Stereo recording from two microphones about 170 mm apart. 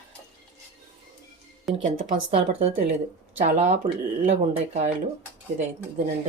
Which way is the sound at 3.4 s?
45° right (ahead or behind).